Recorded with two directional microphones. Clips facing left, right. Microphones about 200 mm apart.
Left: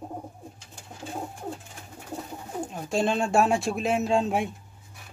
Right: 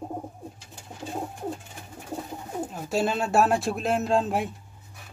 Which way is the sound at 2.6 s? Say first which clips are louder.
Even; 5° right (ahead or behind).